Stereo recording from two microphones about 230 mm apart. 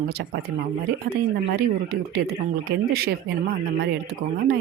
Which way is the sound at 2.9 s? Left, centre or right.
Right.